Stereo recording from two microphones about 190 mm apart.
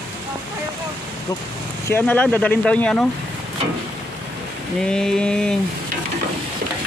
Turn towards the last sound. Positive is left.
turn(degrees=5)  # may be behind; listen again after turning